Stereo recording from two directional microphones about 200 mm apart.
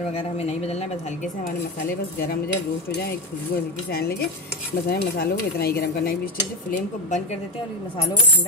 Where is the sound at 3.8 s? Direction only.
50° left (ahead or behind).